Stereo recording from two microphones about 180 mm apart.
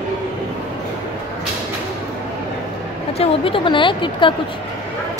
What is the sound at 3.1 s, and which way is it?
Speech, 30° left (ahead or behind).